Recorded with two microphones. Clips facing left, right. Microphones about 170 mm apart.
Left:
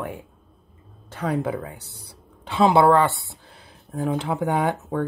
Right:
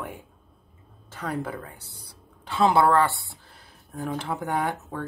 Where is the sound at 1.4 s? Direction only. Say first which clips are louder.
Left 6 dB; 20° left (ahead or behind).